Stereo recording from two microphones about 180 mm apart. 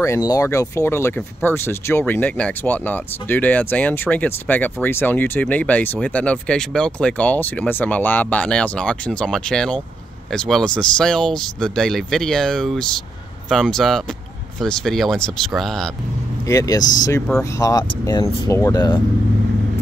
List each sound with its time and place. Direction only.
0.0 s speech: 20° left (ahead or behind); by 15.9 s centre (ahead or behind)
16.4 s speech: 20° left (ahead or behind)